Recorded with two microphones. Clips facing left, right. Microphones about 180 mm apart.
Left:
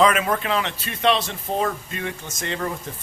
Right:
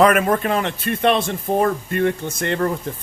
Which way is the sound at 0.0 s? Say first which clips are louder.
Right 4 dB; 55° right (ahead or behind).